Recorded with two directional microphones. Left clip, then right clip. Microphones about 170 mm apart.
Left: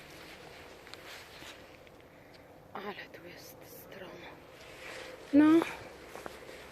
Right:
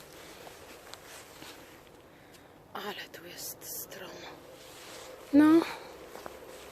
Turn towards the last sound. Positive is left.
turn(degrees=-20)  # may be behind; listen again after turning